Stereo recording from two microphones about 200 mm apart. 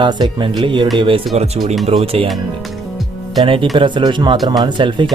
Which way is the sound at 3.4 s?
25° right (ahead or behind).